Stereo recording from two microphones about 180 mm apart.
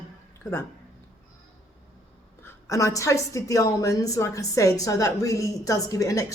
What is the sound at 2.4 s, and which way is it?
A woman's voice, 15° left (ahead or behind).